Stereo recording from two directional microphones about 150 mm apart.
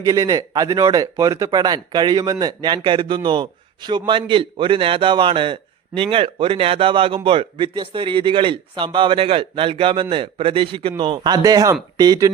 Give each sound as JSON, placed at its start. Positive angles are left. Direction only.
{"t": 0.0, "sound": "speech", "side_deg": -25}